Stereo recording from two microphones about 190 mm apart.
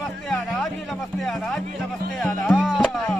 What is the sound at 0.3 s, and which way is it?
Speech, 5° left (ahead or behind).